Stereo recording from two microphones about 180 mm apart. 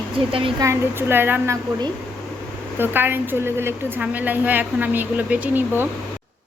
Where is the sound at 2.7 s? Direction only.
10° right (ahead or behind).